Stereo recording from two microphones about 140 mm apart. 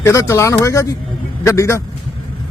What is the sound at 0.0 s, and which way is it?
A man's voice, 20° left (ahead or behind).